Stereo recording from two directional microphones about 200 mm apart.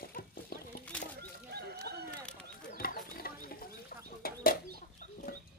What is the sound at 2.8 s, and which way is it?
Chicken, 45° left (ahead or behind).